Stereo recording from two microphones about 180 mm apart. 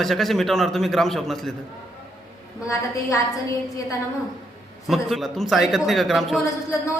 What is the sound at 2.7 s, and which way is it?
Speech, 20° left (ahead or behind).